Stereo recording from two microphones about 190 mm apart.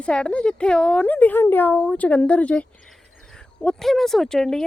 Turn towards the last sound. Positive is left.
turn(degrees=5)  # may be behind; listen again after turning